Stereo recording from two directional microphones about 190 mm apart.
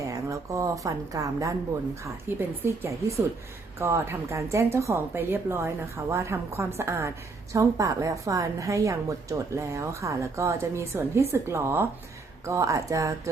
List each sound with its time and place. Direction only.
0.1 s a woman's voice: 15° right (ahead or behind)